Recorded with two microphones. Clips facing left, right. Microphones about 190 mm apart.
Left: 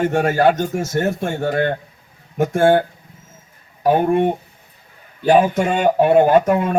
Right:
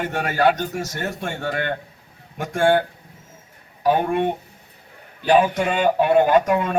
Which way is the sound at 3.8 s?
45° left (ahead or behind).